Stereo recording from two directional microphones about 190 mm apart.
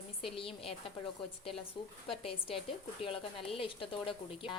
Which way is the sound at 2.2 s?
30° left (ahead or behind).